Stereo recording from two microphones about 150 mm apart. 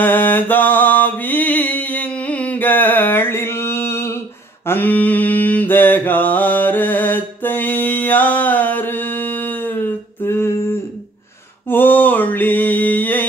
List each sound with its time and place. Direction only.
0.0 s mantra: 15° left (ahead or behind)